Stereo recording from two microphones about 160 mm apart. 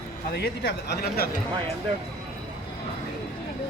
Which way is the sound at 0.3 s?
90° left.